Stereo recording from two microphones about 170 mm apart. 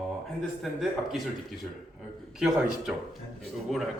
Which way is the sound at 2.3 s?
5° right (ahead or behind).